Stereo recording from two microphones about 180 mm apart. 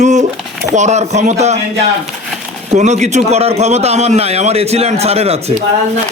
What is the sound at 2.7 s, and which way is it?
A man's voice, 40° right (ahead or behind).